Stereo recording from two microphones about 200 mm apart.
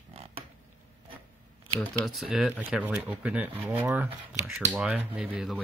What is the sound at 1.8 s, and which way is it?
Speech, centre (ahead or behind).